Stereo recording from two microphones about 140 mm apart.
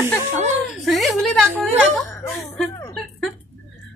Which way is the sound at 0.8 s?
Centre (ahead or behind).